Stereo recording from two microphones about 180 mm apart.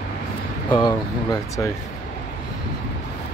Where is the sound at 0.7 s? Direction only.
25° left (ahead or behind).